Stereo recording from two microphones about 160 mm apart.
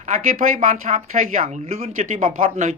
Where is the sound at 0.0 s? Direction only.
50° right (ahead or behind).